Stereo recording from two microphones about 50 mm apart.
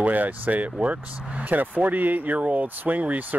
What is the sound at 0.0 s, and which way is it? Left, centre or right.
Speech, right.